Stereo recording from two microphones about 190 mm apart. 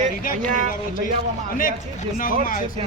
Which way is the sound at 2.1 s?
45° left (ahead or behind).